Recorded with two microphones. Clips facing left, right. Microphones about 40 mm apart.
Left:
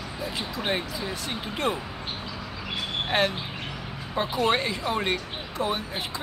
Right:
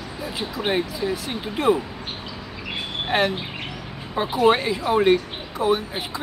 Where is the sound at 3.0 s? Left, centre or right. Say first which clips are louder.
Right 4 dB; centre.